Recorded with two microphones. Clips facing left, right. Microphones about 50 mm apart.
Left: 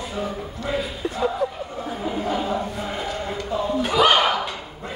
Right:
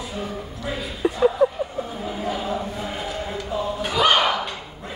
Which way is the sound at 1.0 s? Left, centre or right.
Centre.